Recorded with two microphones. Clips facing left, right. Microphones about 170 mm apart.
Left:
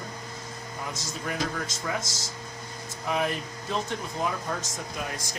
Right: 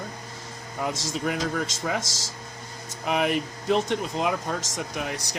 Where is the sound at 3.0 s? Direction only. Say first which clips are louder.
Right 4 dB; 75° right (ahead or behind).